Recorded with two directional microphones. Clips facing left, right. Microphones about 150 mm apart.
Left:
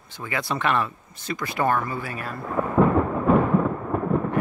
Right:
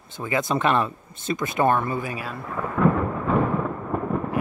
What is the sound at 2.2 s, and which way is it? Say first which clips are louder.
Speech: even; centre (ahead or behind).